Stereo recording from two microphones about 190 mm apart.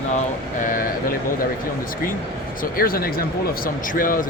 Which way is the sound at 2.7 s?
50° left (ahead or behind).